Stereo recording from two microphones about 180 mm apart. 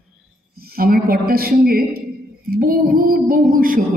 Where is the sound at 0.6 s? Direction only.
55° right (ahead or behind).